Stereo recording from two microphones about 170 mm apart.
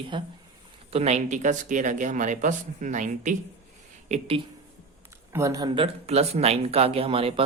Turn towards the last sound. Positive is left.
turn(degrees=-35)  # may be behind; listen again after turning